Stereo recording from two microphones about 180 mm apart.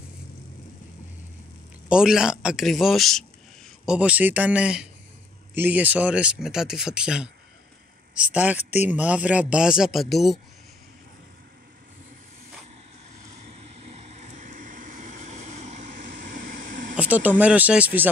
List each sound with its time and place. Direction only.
1.9 s speech: 5° right (ahead or behind)
13.5 s vehicle: 35° right (ahead or behind)
16.9 s speech: 10° right (ahead or behind)